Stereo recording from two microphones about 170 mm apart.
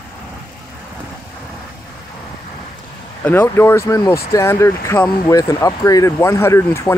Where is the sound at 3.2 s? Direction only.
15° left (ahead or behind).